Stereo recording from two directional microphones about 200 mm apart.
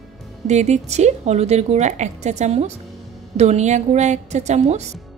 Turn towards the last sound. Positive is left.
turn(degrees=-35)  # may be behind; listen again after turning